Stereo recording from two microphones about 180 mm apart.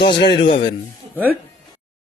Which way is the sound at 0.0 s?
65° left (ahead or behind).